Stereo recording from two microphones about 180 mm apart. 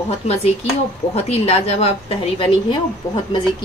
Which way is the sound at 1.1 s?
35° left (ahead or behind).